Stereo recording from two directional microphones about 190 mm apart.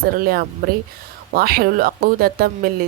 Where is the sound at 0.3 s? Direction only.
50° right (ahead or behind).